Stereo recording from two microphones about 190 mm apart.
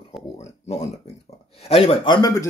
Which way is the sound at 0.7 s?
35° left (ahead or behind).